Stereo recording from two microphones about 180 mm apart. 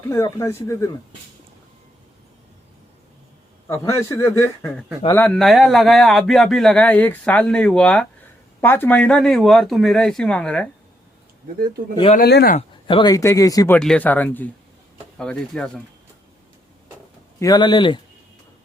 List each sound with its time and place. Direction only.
0.1 s speech: 15° left (ahead or behind)
4.1 s speech: 15° left (ahead or behind)
12.1 s speech: 60° left (ahead or behind)
12.5 s speech: 30° left (ahead or behind)
13.7 s speech: 5° left (ahead or behind)
17.4 s speech: 25° left (ahead or behind)